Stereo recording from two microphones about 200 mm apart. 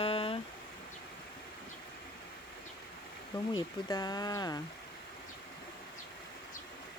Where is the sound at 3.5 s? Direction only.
20° left (ahead or behind).